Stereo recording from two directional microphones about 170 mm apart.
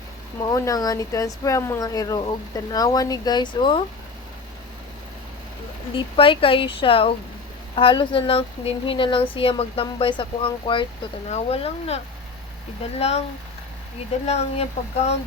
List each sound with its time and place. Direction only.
0.4 s speech: 20° left (ahead or behind)
5.9 s speech: 30° left (ahead or behind)
13.0 s speech: 40° left (ahead or behind)
14.3 s speech: 40° left (ahead or behind)